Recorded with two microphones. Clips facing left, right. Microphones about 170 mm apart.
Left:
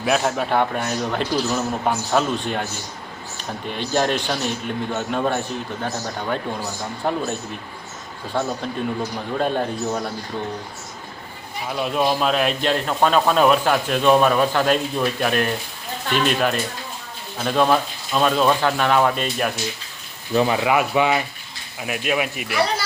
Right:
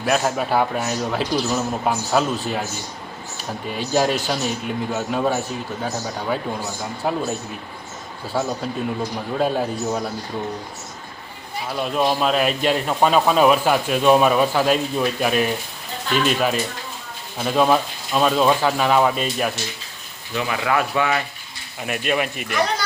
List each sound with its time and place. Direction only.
0.0 s a man's voice: centre (ahead or behind)
3.7 s a man's voice: 5° right (ahead or behind)
8.3 s a man's voice: 5° right (ahead or behind)
11.8 s a man's voice: centre (ahead or behind)
20.3 s speech: 35° left (ahead or behind)
20.7 s speech: 15° left (ahead or behind)
21.8 s a man's voice: centre (ahead or behind)